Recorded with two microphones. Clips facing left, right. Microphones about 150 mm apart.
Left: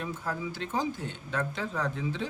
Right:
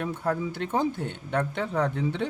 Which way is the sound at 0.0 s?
60° right (ahead or behind).